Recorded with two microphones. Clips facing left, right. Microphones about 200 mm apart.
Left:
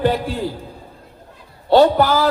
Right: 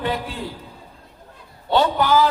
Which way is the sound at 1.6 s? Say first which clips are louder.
Left 6 dB; 40° left (ahead or behind).